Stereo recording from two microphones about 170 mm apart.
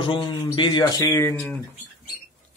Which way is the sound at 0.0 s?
30° left (ahead or behind).